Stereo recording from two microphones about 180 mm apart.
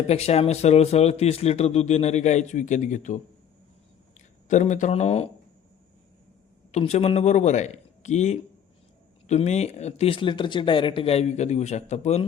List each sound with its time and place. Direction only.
0.1 s speech: 35° left (ahead or behind)
4.4 s speech: 40° left (ahead or behind)
6.7 s a man's voice: 35° left (ahead or behind)